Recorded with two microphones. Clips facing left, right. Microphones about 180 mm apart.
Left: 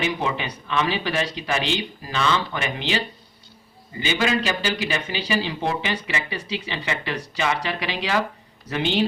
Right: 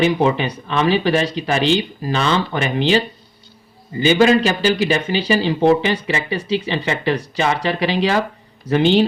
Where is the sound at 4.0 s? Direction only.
35° right (ahead or behind).